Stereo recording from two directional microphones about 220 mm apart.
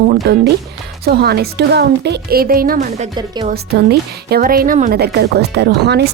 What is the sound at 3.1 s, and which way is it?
Speech, 20° right (ahead or behind).